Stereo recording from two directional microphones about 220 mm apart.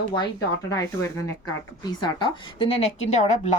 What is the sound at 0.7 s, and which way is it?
A woman's voice, 15° left (ahead or behind).